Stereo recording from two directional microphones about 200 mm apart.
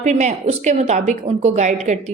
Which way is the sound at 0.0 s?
35° right (ahead or behind).